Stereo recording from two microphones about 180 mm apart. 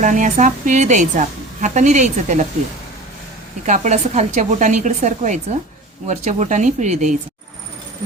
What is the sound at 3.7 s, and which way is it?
Speech, 40° right (ahead or behind).